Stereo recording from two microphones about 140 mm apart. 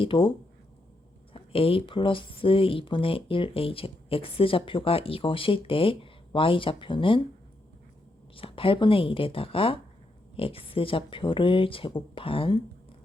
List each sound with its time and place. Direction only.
0.0 s speech: 40° left (ahead or behind)
8.4 s speech: 40° left (ahead or behind)